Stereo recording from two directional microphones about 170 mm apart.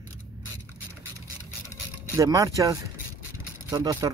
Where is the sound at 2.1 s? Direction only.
20° right (ahead or behind).